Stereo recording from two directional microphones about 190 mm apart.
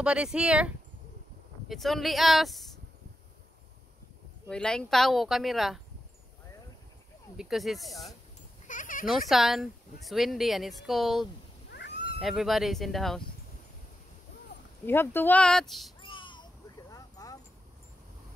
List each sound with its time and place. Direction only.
0.0 s speech: 5° right (ahead or behind)
4.5 s speech: 5° left (ahead or behind)
7.3 s speech: centre (ahead or behind)
8.6 s a sound: 45° left (ahead or behind)
9.0 s speech: centre (ahead or behind)
11.7 s cat: 65° left (ahead or behind)
12.2 s speech: centre (ahead or behind)
14.9 s speech: 10° left (ahead or behind)
16.0 s a sound: 25° left (ahead or behind)
16.9 s vehicle: 20° left (ahead or behind)